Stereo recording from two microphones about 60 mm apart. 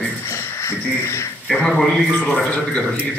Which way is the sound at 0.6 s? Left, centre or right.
Left.